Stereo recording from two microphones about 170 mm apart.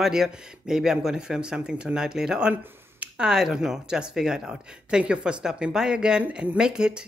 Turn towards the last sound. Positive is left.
turn(degrees=-5)  # may be behind; listen again after turning